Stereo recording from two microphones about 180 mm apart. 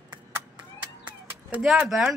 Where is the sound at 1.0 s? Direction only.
5° right (ahead or behind).